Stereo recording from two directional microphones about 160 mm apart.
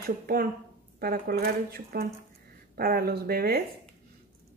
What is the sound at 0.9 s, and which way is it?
Speech, 70° right (ahead or behind).